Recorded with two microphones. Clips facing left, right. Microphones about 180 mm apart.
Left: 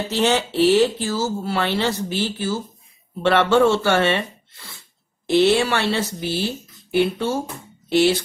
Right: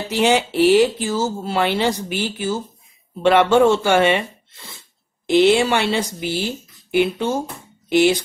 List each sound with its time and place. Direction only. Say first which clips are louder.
0.1 s speech: right 3 dB; 10° right (ahead or behind)